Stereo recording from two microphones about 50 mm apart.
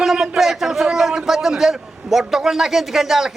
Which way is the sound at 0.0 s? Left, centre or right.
Centre.